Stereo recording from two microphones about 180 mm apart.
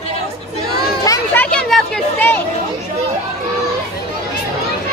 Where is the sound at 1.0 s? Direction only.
10° left (ahead or behind).